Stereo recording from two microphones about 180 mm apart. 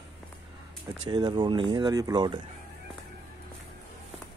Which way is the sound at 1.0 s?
25° right (ahead or behind).